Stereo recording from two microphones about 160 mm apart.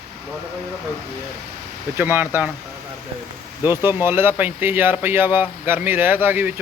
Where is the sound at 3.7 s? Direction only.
15° right (ahead or behind).